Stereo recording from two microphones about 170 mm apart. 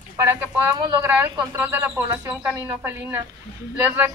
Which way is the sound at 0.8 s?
25° right (ahead or behind).